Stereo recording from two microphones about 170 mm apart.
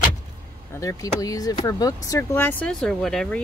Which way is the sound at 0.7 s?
20° left (ahead or behind).